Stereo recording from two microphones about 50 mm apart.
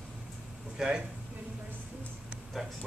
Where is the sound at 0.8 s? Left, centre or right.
Centre.